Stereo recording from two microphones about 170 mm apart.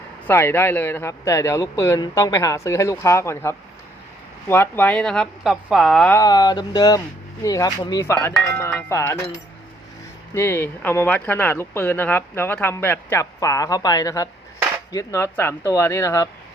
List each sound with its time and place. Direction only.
0.3 s speech: 15° left (ahead or behind)
6.1 s a sound: 20° left (ahead or behind)
7.4 s speech: 20° left (ahead or behind)